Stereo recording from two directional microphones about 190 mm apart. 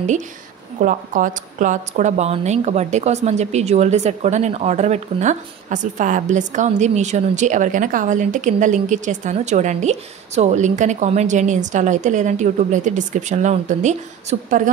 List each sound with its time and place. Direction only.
0.7 s speech: 45° right (ahead or behind)